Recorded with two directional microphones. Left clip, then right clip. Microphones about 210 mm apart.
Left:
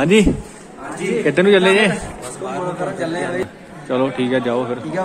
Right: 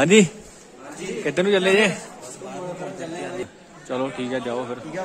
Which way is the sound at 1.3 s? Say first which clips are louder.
Left 6 dB; 5° right (ahead or behind).